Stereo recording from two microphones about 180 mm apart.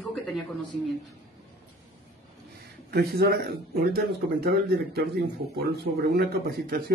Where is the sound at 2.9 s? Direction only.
60° right (ahead or behind).